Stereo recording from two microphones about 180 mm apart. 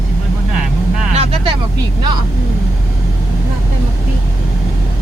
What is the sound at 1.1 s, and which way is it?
Vehicle, 35° right (ahead or behind).